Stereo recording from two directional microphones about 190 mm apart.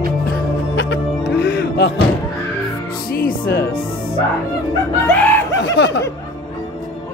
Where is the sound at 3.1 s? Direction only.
50° left (ahead or behind).